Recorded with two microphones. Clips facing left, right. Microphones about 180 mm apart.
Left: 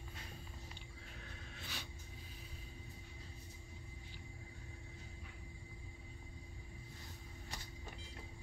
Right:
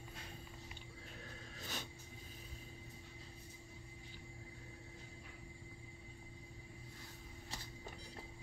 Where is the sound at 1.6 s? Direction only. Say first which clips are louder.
Right 4 dB; 45° right (ahead or behind).